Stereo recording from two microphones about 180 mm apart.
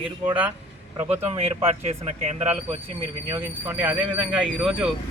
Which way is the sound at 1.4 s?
35° right (ahead or behind).